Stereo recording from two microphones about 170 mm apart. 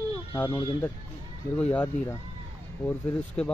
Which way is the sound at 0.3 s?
20° left (ahead or behind).